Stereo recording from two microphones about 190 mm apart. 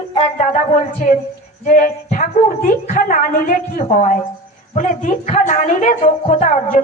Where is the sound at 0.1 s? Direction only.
30° left (ahead or behind).